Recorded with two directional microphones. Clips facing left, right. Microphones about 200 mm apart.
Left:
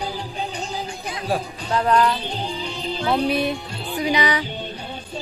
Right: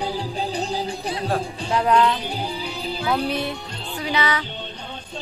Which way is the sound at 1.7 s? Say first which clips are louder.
Even; 10° right (ahead or behind).